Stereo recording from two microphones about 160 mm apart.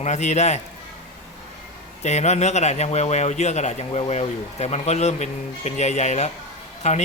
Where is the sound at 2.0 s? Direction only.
45° left (ahead or behind).